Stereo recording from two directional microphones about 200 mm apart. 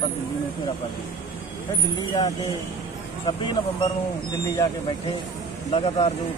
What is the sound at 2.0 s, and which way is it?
Speech, 20° left (ahead or behind).